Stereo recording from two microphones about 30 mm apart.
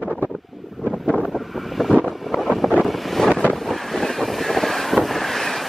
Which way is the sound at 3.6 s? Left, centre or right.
Centre.